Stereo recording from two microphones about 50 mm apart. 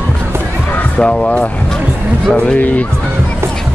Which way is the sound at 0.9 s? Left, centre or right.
Left.